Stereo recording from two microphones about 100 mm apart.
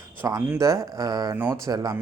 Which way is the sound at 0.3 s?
35° right (ahead or behind).